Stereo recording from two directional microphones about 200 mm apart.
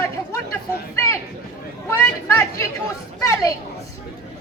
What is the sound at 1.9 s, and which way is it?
Speech, 15° left (ahead or behind).